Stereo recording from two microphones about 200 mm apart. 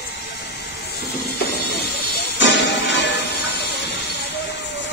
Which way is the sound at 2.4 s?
60° left (ahead or behind).